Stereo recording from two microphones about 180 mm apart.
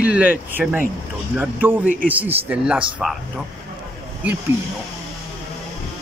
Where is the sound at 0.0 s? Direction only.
5° right (ahead or behind).